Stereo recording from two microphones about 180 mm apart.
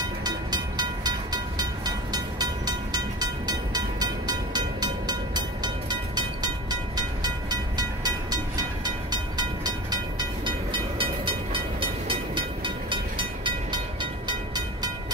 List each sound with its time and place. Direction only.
0.2 s train: 25° right (ahead or behind)